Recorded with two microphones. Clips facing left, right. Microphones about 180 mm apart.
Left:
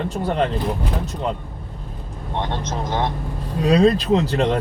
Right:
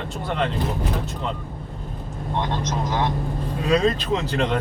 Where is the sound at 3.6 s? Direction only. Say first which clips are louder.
Left 5 dB; 35° left (ahead or behind).